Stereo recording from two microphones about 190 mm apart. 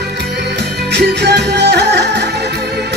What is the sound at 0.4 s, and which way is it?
Music, 60° right (ahead or behind).